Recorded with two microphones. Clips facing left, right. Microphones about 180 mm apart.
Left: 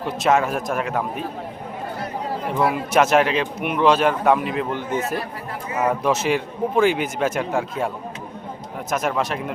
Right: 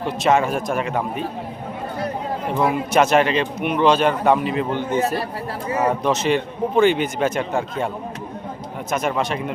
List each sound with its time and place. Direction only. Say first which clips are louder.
0.0 s speech: right 1 dB; centre (ahead or behind)
2.5 s speech: right 1 dB; centre (ahead or behind)
4.7 s a man's voice: right 3 dB; 30° right (ahead or behind)
6.0 s speech: right 1 dB; 5° left (ahead or behind)
8.9 s speech: right 1 dB; centre (ahead or behind)